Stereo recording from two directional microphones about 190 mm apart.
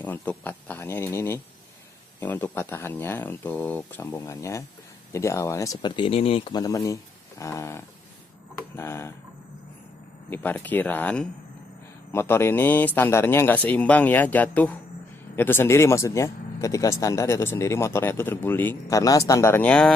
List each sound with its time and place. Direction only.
0.0 s speech: 10° left (ahead or behind)
10.3 s speech: 10° left (ahead or behind)